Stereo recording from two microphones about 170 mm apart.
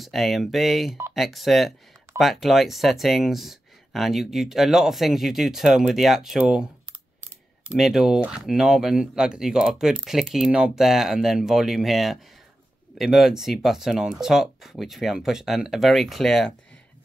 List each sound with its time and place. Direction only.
0.0 s speech: centre (ahead or behind)